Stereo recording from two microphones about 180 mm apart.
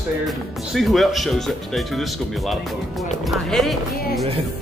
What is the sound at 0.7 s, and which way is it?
Speech, centre (ahead or behind).